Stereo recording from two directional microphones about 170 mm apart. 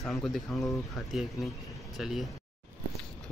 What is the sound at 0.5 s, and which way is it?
Speech, 20° left (ahead or behind).